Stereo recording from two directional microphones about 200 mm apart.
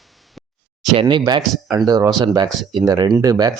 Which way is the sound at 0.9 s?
20° right (ahead or behind).